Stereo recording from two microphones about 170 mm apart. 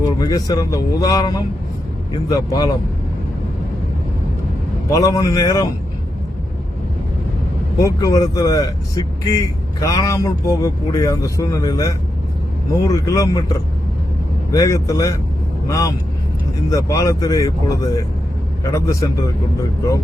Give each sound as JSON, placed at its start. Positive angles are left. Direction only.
{"t": 0.0, "sound": "speech", "side_deg": 20}
{"t": 4.9, "sound": "speech", "side_deg": 20}
{"t": 7.8, "sound": "speech", "side_deg": 20}
{"t": 14.5, "sound": "speech", "side_deg": 20}
{"t": 18.6, "sound": "speech", "side_deg": 20}